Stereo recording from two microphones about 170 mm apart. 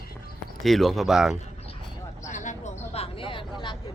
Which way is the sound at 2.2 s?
45° left (ahead or behind).